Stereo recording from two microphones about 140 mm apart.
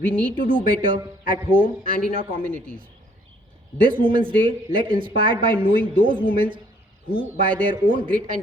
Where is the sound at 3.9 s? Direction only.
40° right (ahead or behind).